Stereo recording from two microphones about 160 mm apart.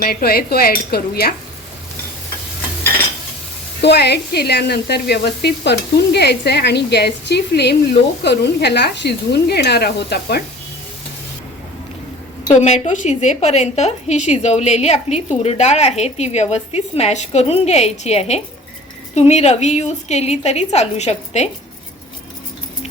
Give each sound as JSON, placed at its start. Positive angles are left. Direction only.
{"t": 0.0, "sound": "cutlery", "side_deg": 70}
{"t": 3.8, "sound": "speech", "side_deg": 90}
{"t": 12.5, "sound": "a woman's voice", "side_deg": 45}